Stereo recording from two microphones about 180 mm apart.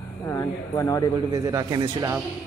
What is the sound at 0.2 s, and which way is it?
Speech, 15° left (ahead or behind).